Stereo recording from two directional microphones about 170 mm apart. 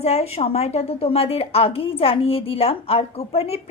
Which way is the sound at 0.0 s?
40° left (ahead or behind).